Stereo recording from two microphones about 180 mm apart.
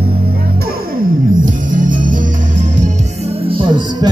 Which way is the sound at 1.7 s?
45° right (ahead or behind).